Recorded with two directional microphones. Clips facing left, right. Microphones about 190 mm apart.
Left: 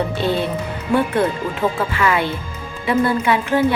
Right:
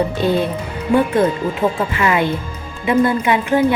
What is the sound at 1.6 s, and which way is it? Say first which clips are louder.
A woman's voice: right 1 dB; 20° right (ahead or behind).